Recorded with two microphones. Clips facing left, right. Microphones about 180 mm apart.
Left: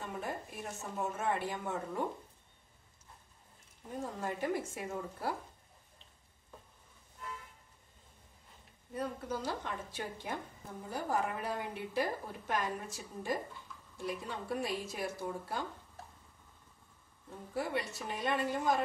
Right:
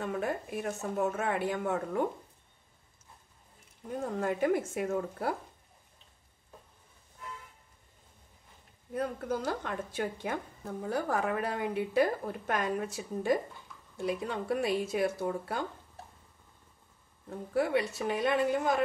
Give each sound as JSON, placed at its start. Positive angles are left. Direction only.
{"t": 0.0, "sound": "a woman's voice", "side_deg": -65}
{"t": 4.0, "sound": "a woman's voice", "side_deg": -60}
{"t": 8.9, "sound": "a woman's voice", "side_deg": -60}
{"t": 17.3, "sound": "a woman's voice", "side_deg": -65}